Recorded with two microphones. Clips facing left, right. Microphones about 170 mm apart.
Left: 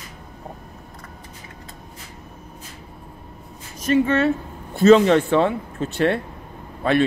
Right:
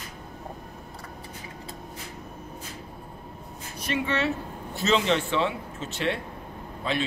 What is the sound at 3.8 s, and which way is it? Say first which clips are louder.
A man's voice: left 9 dB; 45° left (ahead or behind).